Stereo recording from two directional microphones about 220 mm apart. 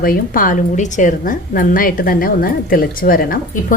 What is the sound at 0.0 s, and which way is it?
A woman's voice, 40° left (ahead or behind).